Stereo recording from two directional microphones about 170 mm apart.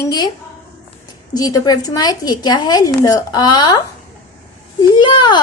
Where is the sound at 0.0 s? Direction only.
25° left (ahead or behind).